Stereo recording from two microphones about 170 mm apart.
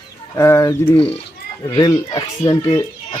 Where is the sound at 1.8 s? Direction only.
25° left (ahead or behind).